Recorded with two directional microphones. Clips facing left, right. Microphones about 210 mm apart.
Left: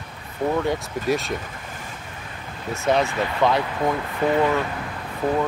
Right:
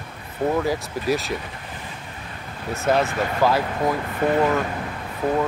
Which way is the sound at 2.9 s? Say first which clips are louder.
Even; centre (ahead or behind).